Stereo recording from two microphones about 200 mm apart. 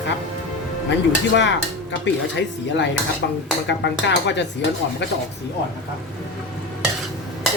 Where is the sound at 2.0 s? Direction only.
65° left (ahead or behind).